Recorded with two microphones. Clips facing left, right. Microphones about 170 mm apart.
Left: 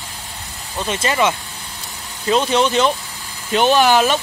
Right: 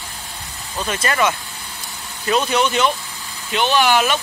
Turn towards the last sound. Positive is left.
turn(degrees=35)  # may be behind; listen again after turning